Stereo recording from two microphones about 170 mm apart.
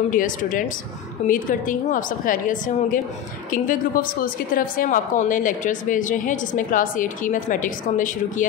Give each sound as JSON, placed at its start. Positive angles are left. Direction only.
{"t": 0.1, "sound": "a woman's voice", "side_deg": 50}